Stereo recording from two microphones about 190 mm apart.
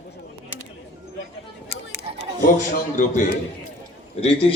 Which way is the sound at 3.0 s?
45° left (ahead or behind).